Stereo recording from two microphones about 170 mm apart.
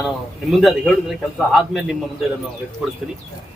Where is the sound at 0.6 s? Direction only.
Centre (ahead or behind).